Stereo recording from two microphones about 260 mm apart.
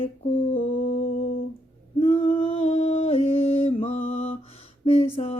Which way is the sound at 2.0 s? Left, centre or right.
Left.